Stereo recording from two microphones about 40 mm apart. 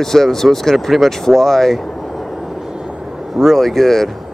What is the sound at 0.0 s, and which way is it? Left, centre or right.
Speech, centre.